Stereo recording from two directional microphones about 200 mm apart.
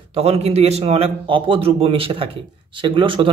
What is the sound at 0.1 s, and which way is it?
A man's voice, 30° right (ahead or behind).